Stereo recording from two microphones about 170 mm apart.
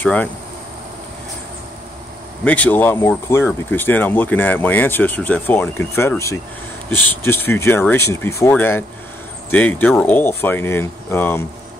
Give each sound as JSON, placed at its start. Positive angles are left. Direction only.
{"t": 0.0, "sound": "speech", "side_deg": 10}
{"t": 2.4, "sound": "speech", "side_deg": 10}